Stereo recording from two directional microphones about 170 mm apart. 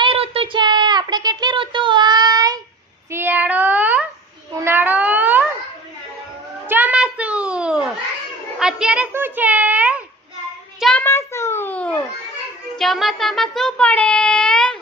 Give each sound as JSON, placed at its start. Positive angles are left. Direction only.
{"t": 0.0, "sound": "child singing", "side_deg": -35}
{"t": 4.5, "sound": "cat", "side_deg": -15}
{"t": 6.7, "sound": "children playing", "side_deg": -10}
{"t": 8.5, "sound": "a sound", "side_deg": -5}
{"t": 10.8, "sound": "child singing", "side_deg": 0}
{"t": 11.0, "sound": "a sound", "side_deg": 15}
{"t": 12.7, "sound": "child singing", "side_deg": 0}